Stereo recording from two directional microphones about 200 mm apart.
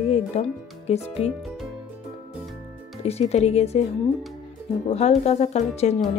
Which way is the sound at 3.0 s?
30° left (ahead or behind).